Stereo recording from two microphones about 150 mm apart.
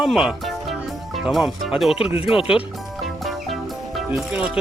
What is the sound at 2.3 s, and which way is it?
Speech, 35° left (ahead or behind).